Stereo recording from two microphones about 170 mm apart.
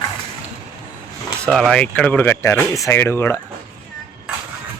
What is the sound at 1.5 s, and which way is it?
Speech, centre (ahead or behind).